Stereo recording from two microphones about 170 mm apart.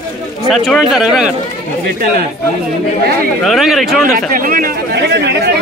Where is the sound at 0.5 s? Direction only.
Centre (ahead or behind).